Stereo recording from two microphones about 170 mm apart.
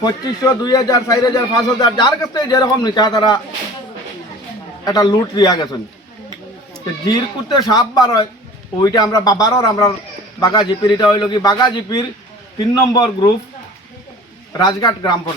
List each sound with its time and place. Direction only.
0.0 s speech: 20° left (ahead or behind)
4.9 s speech: 20° left (ahead or behind)
7.1 s speech: 25° left (ahead or behind)
14.6 s speech: 25° left (ahead or behind)